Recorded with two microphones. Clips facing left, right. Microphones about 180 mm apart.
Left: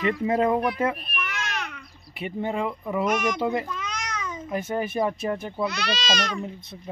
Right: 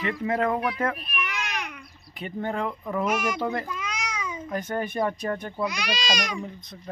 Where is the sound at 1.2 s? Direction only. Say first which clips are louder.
Right 1 dB; 15° right (ahead or behind).